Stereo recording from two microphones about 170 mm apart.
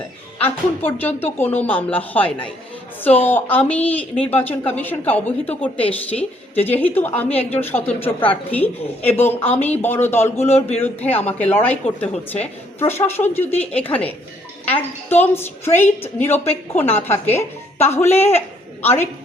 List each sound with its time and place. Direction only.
0.4 s a woman's voice: 10° left (ahead or behind)
8.2 s a woman's voice: 30° left (ahead or behind)
8.5 s a woman's voice: 10° left (ahead or behind)
12.1 s a woman's voice: 35° left (ahead or behind)
13.0 s a woman's voice: 15° left (ahead or behind)